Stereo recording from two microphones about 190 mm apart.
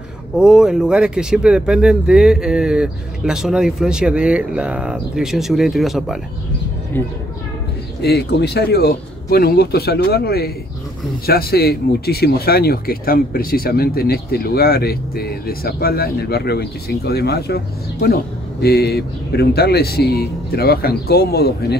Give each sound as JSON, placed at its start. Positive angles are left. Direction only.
{"t": 0.4, "sound": "speech", "side_deg": -5}
{"t": 8.0, "sound": "speech", "side_deg": 60}